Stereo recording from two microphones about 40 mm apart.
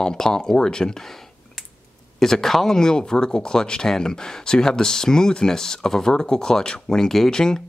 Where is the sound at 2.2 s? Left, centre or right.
Centre.